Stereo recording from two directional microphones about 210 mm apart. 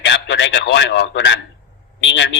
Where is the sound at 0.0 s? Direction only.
55° left (ahead or behind).